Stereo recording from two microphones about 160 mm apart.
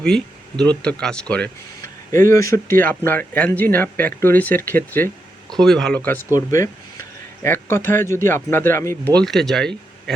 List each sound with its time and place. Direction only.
0.6 s speech: 5° left (ahead or behind)
2.1 s speech: 20° left (ahead or behind)
9.1 s speech: 5° left (ahead or behind)